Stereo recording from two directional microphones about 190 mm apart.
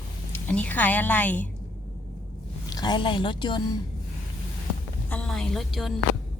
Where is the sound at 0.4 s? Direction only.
10° left (ahead or behind).